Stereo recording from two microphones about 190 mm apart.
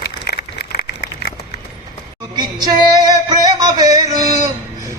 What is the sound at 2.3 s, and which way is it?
Music, 20° right (ahead or behind).